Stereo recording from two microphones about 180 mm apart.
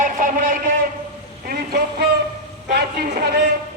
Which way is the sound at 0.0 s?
45° right (ahead or behind).